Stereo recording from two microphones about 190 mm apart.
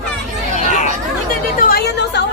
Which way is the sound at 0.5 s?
40° left (ahead or behind).